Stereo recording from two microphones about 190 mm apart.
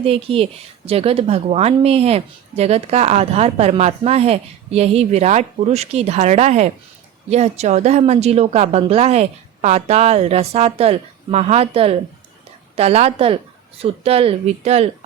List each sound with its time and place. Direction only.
0.0 s a woman's voice: 30° right (ahead or behind)